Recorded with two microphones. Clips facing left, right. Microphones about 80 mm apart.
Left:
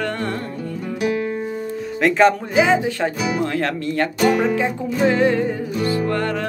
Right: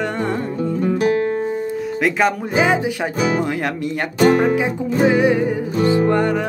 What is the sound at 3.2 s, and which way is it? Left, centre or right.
Speech, right.